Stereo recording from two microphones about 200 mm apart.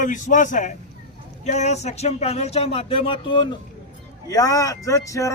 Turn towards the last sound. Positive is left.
turn(degrees=15)  # may be behind; listen again after turning